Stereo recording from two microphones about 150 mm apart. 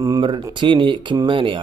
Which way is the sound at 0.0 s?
30° right (ahead or behind).